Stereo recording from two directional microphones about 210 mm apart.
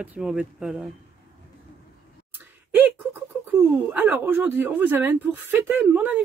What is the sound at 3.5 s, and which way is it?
Speech, 10° right (ahead or behind).